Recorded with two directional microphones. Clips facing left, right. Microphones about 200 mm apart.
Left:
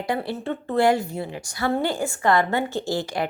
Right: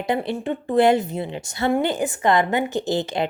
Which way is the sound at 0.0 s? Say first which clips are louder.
Right 3 dB; 20° right (ahead or behind).